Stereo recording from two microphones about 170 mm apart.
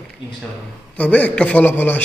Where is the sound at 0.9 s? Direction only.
10° left (ahead or behind).